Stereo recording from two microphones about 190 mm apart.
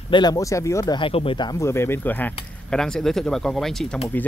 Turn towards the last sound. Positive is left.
turn(degrees=0)  # may be behind; listen again after turning